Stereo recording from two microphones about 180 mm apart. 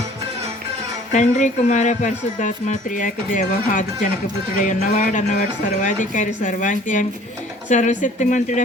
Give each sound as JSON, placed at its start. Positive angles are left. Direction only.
{"t": 1.1, "sound": "speech", "side_deg": 40}